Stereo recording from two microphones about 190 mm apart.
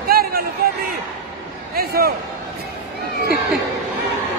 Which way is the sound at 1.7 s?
55° right (ahead or behind).